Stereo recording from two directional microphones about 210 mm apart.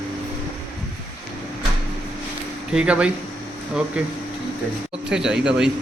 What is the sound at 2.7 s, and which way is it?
Speech, 5° right (ahead or behind).